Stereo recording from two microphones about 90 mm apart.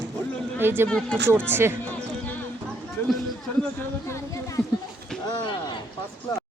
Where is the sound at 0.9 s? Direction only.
10° left (ahead or behind).